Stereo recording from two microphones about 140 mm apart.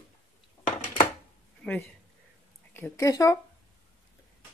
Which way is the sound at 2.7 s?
20° left (ahead or behind).